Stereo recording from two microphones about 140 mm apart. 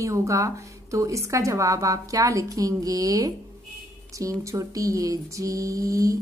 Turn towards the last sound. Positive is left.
turn(degrees=-25)  # may be behind; listen again after turning